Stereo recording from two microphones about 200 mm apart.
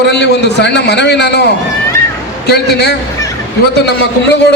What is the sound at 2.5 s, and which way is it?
Speech, 55° left (ahead or behind).